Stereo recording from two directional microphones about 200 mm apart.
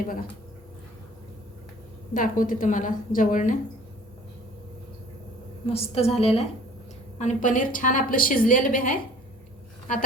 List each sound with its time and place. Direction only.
2.1 s a woman's voice: 45° left (ahead or behind)
5.6 s a woman's voice: 30° left (ahead or behind)